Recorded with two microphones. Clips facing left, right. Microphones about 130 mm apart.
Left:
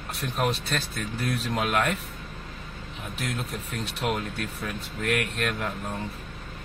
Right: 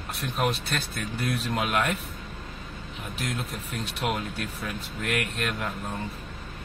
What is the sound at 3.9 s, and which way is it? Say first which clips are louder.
Speech: left 1 dB; 5° right (ahead or behind).